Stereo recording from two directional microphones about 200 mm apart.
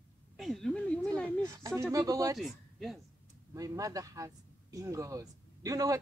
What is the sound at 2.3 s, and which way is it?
Speech, centre (ahead or behind).